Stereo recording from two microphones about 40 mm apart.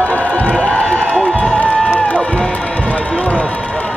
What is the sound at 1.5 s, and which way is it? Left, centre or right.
Crowd, left.